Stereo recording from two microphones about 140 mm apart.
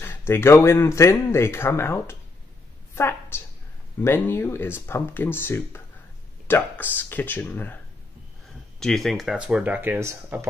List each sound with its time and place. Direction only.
0.0 s a woman's voice: 15° left (ahead or behind)
8.7 s speech: 5° left (ahead or behind); by 10.5 s 20° right (ahead or behind)